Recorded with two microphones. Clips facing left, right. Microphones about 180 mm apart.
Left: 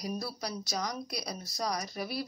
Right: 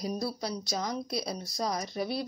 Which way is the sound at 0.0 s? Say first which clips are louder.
Right 4 dB; 25° right (ahead or behind).